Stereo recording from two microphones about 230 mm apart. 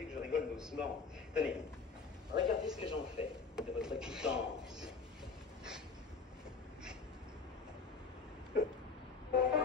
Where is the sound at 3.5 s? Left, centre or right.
Centre.